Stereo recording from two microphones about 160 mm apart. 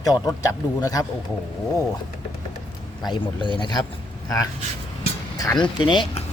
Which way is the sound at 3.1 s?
30° left (ahead or behind).